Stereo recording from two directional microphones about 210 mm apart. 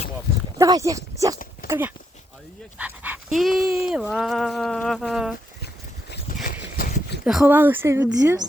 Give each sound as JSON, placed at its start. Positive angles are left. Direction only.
{"t": 0.6, "sound": "a woman's voice", "side_deg": -15}
{"t": 6.4, "sound": "a sound", "side_deg": 45}
{"t": 7.3, "sound": "a woman's voice", "side_deg": -5}